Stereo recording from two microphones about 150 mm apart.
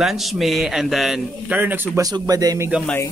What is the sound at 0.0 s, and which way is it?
A man's voice, centre (ahead or behind).